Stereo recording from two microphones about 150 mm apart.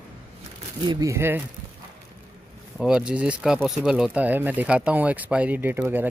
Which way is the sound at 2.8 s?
5° right (ahead or behind).